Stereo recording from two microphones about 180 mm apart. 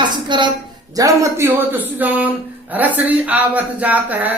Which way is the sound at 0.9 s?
20° right (ahead or behind).